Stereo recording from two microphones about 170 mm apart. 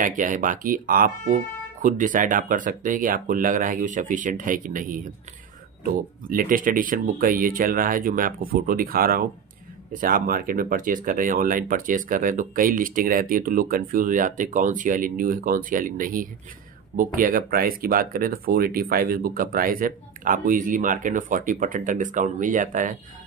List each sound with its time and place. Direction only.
0.0 s speech: 50° right (ahead or behind)